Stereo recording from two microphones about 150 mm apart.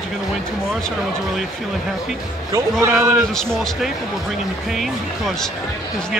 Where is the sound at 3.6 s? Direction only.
Centre (ahead or behind).